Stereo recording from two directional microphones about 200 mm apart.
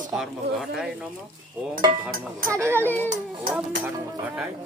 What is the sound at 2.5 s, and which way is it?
Speech, 15° right (ahead or behind).